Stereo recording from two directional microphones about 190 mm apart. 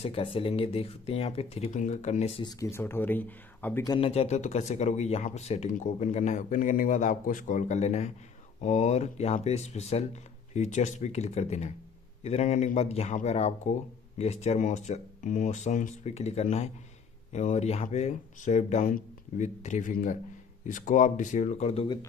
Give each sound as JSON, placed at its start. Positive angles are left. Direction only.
{"t": 0.0, "sound": "speech", "side_deg": 30}
{"t": 2.4, "sound": "speech", "side_deg": 15}
{"t": 3.8, "sound": "speech", "side_deg": 20}
{"t": 4.1, "sound": "speech", "side_deg": 35}